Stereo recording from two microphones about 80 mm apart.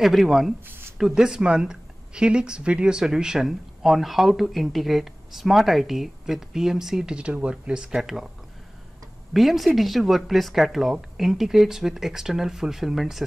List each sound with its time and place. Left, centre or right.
0.0 s speech: centre
0.7 s a sound: right
0.9 s speech: centre
9.3 s speech: centre